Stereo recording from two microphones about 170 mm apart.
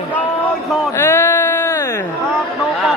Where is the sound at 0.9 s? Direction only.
15° left (ahead or behind).